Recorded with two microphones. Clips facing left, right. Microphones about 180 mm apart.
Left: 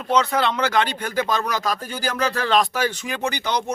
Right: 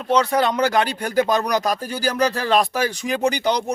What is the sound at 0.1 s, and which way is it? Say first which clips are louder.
A man's voice: right 2 dB; 35° right (ahead or behind).